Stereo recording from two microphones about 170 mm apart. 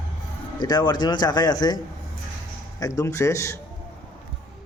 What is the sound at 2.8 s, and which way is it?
Speech, 20° left (ahead or behind).